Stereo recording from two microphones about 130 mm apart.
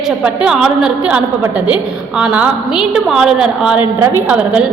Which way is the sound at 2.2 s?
5° right (ahead or behind).